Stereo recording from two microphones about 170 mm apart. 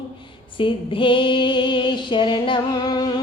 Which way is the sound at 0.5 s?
30° left (ahead or behind).